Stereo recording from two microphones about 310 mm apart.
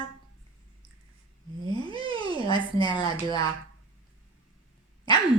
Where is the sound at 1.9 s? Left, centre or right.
Centre.